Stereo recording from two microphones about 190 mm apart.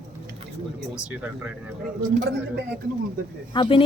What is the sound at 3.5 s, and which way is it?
Speech, 25° left (ahead or behind).